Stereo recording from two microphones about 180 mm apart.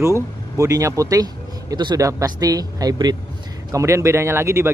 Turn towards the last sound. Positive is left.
turn(degrees=-15)  # may be behind; listen again after turning